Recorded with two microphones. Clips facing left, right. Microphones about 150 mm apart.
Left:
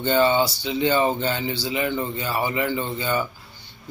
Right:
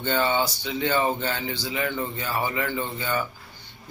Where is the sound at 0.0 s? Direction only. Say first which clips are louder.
Left 5 dB; 15° left (ahead or behind).